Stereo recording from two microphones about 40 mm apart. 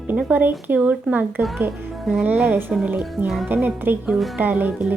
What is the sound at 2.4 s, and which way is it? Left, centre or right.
A woman's voice, right.